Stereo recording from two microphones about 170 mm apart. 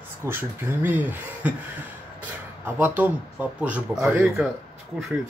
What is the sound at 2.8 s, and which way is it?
Speech, 10° right (ahead or behind).